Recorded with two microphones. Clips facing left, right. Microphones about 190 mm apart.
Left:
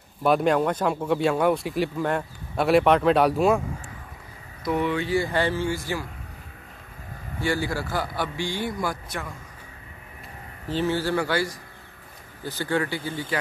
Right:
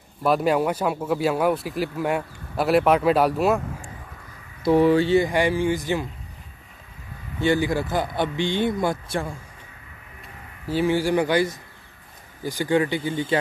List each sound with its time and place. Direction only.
0.2 s speech: centre (ahead or behind)
4.6 s speech: 35° right (ahead or behind)
5.1 s speech: 15° right (ahead or behind)
7.3 s a man's voice: 20° right (ahead or behind)
10.7 s speech: 10° right (ahead or behind)